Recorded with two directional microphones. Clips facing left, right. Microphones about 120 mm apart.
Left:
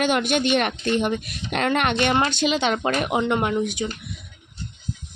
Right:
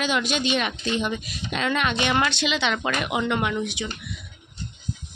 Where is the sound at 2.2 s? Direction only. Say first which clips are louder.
Left 3 dB; 45° left (ahead or behind).